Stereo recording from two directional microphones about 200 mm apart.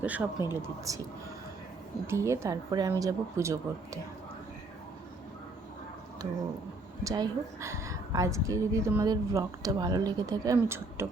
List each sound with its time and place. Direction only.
0.0 s a woman's voice: 5° right (ahead or behind)
2.0 s a woman's voice: 15° right (ahead or behind)
7.0 s a woman's voice: 15° right (ahead or behind)